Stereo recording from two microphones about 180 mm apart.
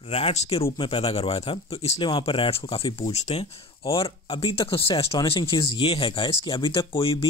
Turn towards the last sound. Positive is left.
turn(degrees=30)  # may be behind; listen again after turning